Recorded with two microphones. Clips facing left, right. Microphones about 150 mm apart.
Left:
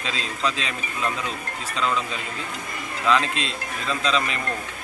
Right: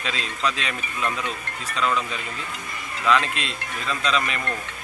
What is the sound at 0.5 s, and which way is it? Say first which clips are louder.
Speech: right 1 dB; 30° left (ahead or behind).